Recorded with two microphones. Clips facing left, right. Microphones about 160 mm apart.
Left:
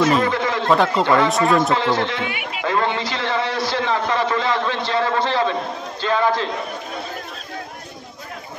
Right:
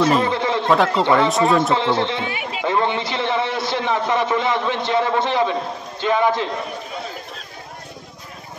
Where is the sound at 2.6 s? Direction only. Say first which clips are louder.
Right 1 dB; 20° right (ahead or behind).